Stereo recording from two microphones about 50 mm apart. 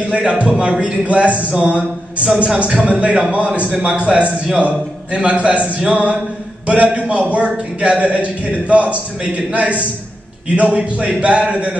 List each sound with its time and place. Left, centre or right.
0.1 s a man's voice: right